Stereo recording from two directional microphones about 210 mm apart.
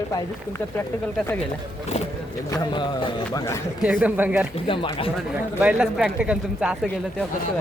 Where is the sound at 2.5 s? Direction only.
20° left (ahead or behind).